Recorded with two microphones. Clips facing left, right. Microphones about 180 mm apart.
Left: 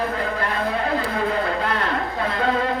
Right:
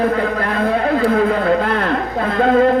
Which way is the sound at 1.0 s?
55° right (ahead or behind).